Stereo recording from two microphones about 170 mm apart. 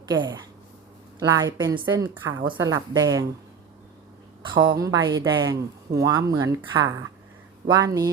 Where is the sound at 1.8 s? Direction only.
10° right (ahead or behind).